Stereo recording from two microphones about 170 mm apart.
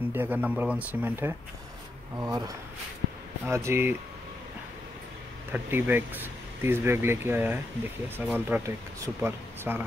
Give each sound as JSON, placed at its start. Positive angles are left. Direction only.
{"t": 0.1, "sound": "speech", "side_deg": -10}
{"t": 5.5, "sound": "speech", "side_deg": -10}